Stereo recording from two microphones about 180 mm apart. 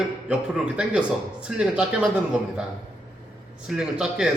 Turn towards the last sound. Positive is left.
turn(degrees=-5)  # may be behind; listen again after turning